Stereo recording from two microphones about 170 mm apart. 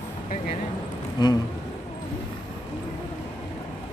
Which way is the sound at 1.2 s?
25° left (ahead or behind).